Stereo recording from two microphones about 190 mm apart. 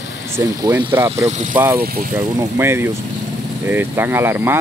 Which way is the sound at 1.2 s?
40° right (ahead or behind).